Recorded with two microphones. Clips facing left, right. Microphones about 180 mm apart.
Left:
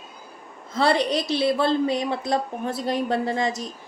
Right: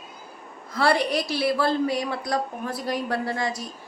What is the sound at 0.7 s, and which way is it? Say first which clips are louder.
A woman's voice: left 1 dB; 20° left (ahead or behind).